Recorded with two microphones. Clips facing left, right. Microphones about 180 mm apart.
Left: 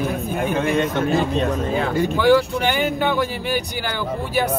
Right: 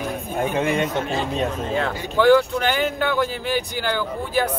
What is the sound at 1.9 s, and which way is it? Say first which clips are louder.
Speech: left 9 dB; 50° left (ahead or behind).